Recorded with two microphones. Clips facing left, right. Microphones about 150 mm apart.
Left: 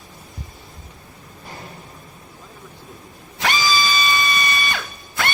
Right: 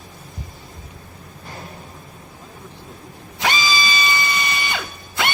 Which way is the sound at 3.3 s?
20° right (ahead or behind).